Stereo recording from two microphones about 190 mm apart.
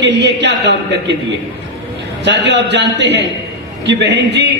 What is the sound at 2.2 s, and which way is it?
A man's voice, 65° right (ahead or behind).